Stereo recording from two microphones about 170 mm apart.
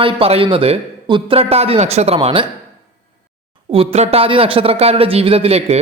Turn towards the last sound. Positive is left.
turn(degrees=-35)  # may be behind; listen again after turning